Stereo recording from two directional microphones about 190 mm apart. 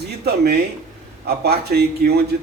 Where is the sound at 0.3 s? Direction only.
55° right (ahead or behind).